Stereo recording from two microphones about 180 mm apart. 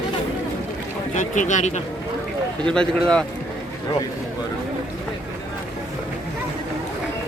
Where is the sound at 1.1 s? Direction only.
45° left (ahead or behind).